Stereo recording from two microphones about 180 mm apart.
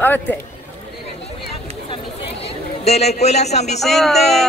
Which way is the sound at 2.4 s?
35° left (ahead or behind).